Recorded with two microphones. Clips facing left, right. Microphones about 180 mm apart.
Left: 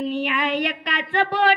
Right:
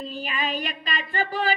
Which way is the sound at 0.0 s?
75° left (ahead or behind).